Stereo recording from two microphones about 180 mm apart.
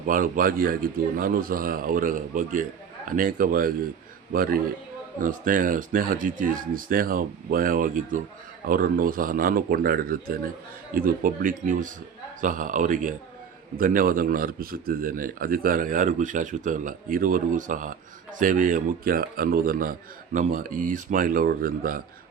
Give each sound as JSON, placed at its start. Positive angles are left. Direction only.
{"t": 0.0, "sound": "a man's voice", "side_deg": -50}